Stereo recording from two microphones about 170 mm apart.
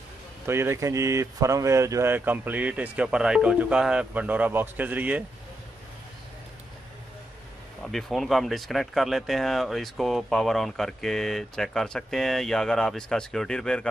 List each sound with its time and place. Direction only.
0.5 s speech: 15° right (ahead or behind)
7.8 s speech: centre (ahead or behind)